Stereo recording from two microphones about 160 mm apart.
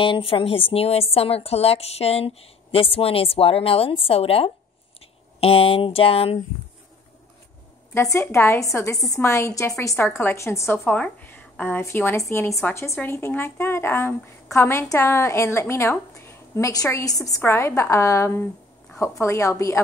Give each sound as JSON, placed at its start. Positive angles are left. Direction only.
{"t": 0.0, "sound": "a woman's voice", "side_deg": 35}
{"t": 7.9, "sound": "a woman's voice", "side_deg": 15}